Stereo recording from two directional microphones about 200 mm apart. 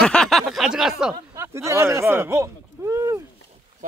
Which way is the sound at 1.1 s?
15° right (ahead or behind).